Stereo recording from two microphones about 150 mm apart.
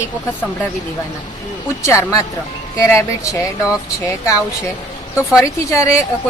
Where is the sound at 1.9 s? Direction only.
20° left (ahead or behind).